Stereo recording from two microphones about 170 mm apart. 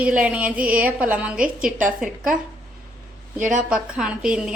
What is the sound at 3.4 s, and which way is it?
Speech, 50° right (ahead or behind).